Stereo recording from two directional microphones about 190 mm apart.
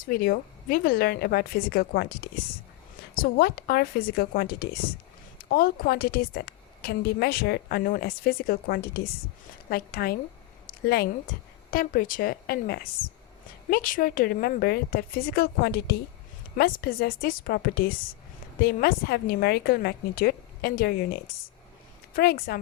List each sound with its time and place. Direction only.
0.0 s a woman's voice: 50° left (ahead or behind)
3.2 s a woman's voice: 50° left (ahead or behind)